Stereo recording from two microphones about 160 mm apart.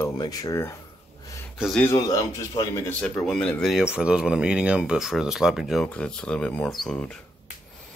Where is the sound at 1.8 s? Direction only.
25° left (ahead or behind).